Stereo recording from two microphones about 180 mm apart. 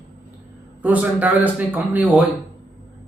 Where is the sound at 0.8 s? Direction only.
10° right (ahead or behind).